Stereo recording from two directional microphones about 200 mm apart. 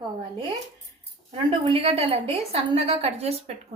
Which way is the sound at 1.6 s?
30° right (ahead or behind).